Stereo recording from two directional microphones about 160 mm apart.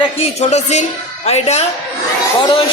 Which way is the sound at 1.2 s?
40° left (ahead or behind).